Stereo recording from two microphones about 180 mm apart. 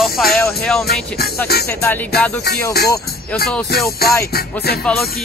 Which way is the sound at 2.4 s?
60° left (ahead or behind).